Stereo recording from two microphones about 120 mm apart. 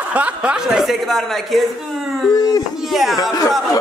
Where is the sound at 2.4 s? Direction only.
30° left (ahead or behind).